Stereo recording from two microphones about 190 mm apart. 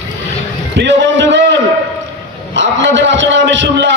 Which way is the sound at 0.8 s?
70° right (ahead or behind).